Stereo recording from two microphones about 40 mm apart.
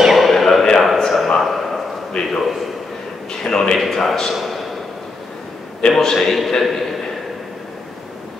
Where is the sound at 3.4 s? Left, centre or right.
Centre.